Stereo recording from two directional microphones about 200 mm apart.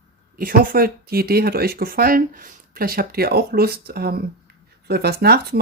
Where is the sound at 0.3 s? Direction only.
45° right (ahead or behind).